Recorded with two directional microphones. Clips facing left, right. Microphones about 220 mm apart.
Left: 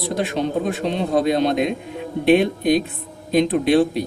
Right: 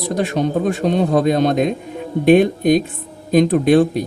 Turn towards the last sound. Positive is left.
turn(degrees=-45)  # may be behind; listen again after turning